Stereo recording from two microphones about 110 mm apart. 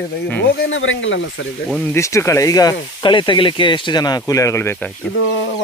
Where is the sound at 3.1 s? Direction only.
45° left (ahead or behind); by 4.9 s 20° left (ahead or behind).